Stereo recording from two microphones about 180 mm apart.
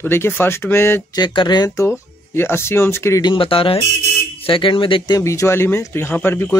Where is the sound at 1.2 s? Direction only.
25° left (ahead or behind).